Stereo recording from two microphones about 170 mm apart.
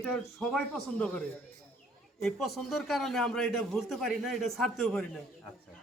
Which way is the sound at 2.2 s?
Centre (ahead or behind).